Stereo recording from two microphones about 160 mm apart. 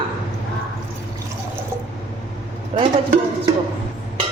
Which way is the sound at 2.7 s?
40° right (ahead or behind).